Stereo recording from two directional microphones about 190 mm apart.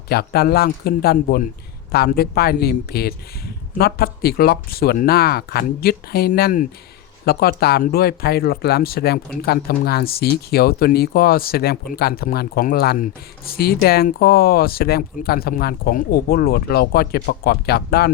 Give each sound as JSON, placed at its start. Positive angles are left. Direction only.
{"t": 0.1, "sound": "a man's voice", "side_deg": 55}